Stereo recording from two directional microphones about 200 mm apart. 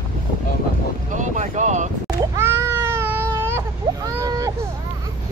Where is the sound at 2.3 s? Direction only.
10° right (ahead or behind).